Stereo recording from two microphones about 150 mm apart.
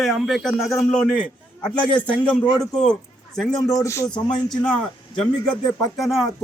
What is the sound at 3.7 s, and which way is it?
Speech, 20° left (ahead or behind).